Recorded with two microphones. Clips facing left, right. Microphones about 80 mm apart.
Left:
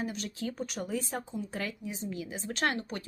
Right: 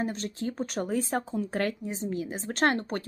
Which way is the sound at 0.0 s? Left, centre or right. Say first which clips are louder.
Right 4 dB; right.